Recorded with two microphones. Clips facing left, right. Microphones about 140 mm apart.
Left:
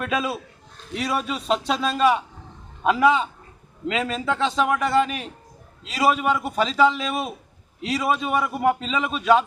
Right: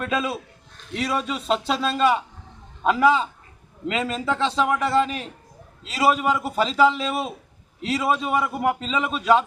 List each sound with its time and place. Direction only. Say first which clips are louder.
0.0 s a man's voice: even; centre (ahead or behind)